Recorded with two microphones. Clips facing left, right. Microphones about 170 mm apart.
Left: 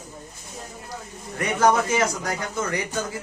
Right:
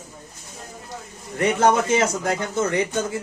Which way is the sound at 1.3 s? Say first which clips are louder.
Right 2 dB; 25° right (ahead or behind).